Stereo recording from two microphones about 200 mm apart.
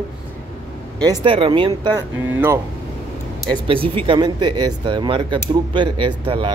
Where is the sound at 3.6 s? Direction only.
25° right (ahead or behind).